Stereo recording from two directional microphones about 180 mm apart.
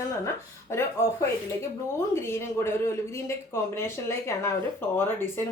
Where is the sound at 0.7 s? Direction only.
15° left (ahead or behind).